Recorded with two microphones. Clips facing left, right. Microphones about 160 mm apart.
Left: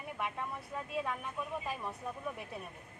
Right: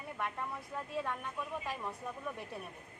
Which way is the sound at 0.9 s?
10° left (ahead or behind).